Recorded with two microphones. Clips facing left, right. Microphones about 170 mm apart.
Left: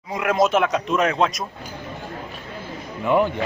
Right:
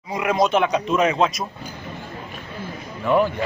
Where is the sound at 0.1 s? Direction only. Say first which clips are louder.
Even; centre (ahead or behind).